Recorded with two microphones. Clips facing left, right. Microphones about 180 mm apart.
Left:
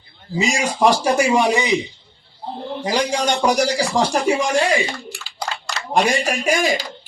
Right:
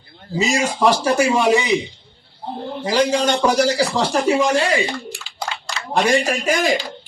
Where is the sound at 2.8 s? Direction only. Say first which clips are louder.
Right 3 dB; 15° left (ahead or behind).